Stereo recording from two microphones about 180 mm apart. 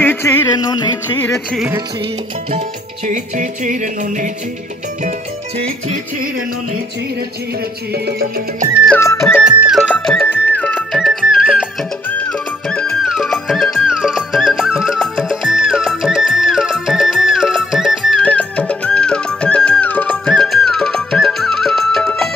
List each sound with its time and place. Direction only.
0.0 s music: 10° left (ahead or behind)
3.1 s music: 45° right (ahead or behind)
7.9 s music: 55° right (ahead or behind)
8.8 s music: 10° left (ahead or behind)
9.6 s music: 5° right (ahead or behind)
10.5 s music: 5° left (ahead or behind)